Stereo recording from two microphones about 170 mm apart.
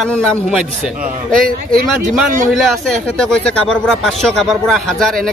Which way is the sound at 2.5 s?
Centre (ahead or behind).